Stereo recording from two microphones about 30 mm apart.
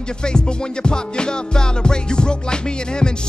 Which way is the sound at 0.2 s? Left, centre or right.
Left.